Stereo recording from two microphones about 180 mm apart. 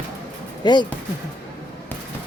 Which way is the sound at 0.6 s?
25° left (ahead or behind).